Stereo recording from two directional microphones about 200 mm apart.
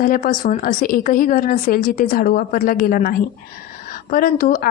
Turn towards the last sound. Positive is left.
turn(degrees=45)  # may be behind; listen again after turning